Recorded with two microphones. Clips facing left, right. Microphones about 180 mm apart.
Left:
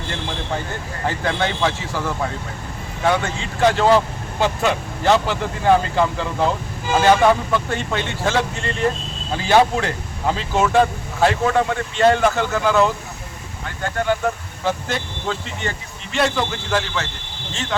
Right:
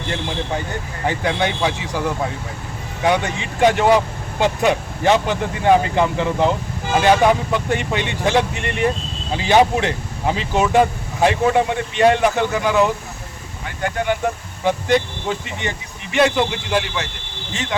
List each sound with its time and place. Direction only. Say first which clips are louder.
1.0 s speech: right 2 dB; 15° right (ahead or behind)